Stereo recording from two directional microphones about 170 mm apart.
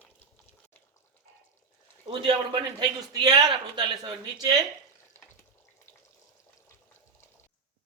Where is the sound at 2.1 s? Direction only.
30° right (ahead or behind).